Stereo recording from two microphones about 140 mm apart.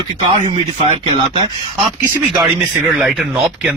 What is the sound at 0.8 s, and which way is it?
Speech, 40° right (ahead or behind).